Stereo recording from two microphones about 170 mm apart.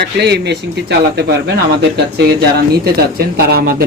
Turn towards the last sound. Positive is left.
turn(degrees=-60)  # may be behind; listen again after turning